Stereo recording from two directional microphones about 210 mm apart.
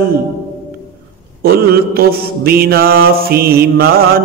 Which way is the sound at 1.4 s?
45° right (ahead or behind).